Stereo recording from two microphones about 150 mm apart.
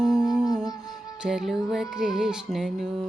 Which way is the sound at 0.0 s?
5° right (ahead or behind).